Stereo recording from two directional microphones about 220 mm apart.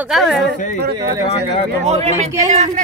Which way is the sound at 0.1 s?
Centre (ahead or behind).